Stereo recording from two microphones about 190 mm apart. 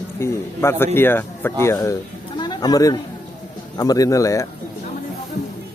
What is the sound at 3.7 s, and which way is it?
Speech, 20° left (ahead or behind).